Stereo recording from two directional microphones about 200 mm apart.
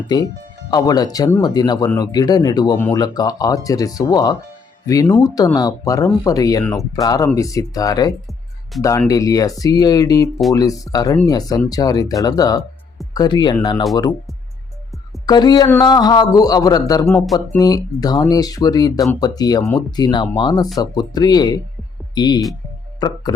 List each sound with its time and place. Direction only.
0.7 s speech: 20° left (ahead or behind)
15.3 s speech: 20° left (ahead or behind)